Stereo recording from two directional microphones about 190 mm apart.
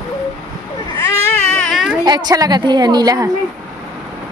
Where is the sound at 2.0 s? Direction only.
20° right (ahead or behind).